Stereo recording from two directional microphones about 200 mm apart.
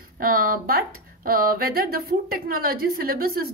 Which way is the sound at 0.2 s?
45° right (ahead or behind).